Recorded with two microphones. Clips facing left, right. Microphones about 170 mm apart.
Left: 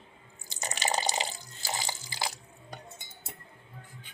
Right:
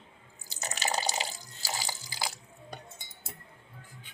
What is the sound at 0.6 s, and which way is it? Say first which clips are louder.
Water: left 1 dB; 15° left (ahead or behind).